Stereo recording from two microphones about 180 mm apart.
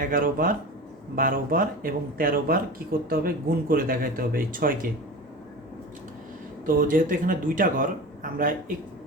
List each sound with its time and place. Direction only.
0.0 s speech: 50° right (ahead or behind)
6.7 s speech: 50° right (ahead or behind)